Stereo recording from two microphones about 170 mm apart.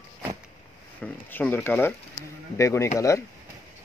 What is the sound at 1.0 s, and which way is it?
Speech, 10° left (ahead or behind).